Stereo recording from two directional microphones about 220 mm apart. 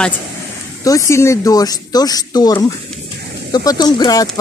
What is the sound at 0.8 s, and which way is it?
Speech, 15° left (ahead or behind).